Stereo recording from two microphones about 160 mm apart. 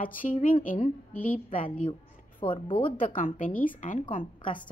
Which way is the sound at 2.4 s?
30° left (ahead or behind).